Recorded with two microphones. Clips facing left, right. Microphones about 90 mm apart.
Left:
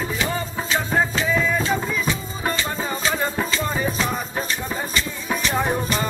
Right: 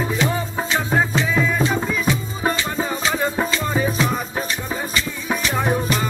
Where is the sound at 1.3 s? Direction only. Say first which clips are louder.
Right 2 dB; 5° right (ahead or behind).